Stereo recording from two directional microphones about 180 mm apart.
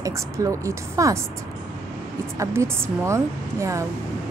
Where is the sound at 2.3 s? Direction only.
15° right (ahead or behind).